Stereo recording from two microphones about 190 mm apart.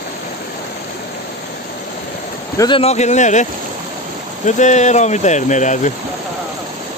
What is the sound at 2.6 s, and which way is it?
Speech, 25° left (ahead or behind).